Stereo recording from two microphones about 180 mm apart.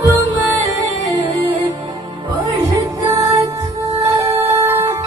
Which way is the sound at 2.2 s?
20° right (ahead or behind).